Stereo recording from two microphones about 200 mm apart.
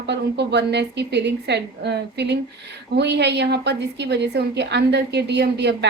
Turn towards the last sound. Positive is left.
turn(degrees=-60)  # may be behind; listen again after turning